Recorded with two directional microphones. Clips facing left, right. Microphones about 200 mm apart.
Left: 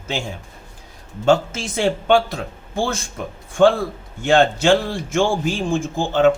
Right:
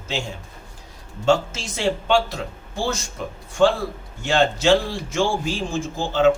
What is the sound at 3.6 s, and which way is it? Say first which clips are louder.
A man's voice: left 3 dB; 55° left (ahead or behind).